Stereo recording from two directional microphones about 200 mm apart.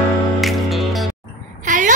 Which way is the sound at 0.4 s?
Centre (ahead or behind).